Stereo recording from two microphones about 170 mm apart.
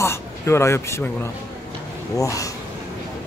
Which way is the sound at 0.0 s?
15° left (ahead or behind).